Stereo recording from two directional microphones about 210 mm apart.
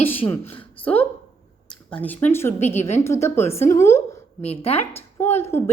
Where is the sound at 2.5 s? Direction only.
30° left (ahead or behind).